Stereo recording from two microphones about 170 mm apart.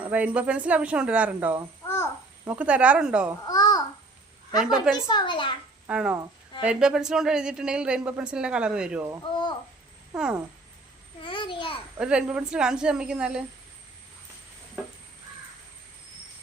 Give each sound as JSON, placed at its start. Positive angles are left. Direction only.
{"t": 0.0, "sound": "a woman's voice", "side_deg": -10}
{"t": 3.4, "sound": "babbling", "side_deg": 25}
{"t": 5.0, "sound": "a woman's voice", "side_deg": 30}
{"t": 5.9, "sound": "a woman's voice", "side_deg": -5}
{"t": 9.2, "sound": "a sound", "side_deg": 25}
{"t": 10.1, "sound": "speech", "side_deg": 0}
{"t": 11.2, "sound": "babbling", "side_deg": 30}
{"t": 11.9, "sound": "speech", "side_deg": -5}